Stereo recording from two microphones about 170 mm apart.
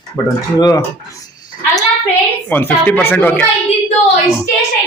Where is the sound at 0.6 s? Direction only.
20° left (ahead or behind).